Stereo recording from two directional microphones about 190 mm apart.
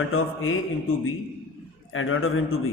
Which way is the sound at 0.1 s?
90° left.